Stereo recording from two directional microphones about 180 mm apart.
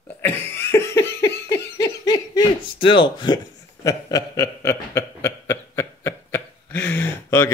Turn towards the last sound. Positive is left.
turn(degrees=15)  # may be behind; listen again after turning